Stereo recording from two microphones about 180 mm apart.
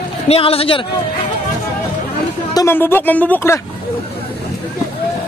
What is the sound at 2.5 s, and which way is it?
Speech, 15° left (ahead or behind).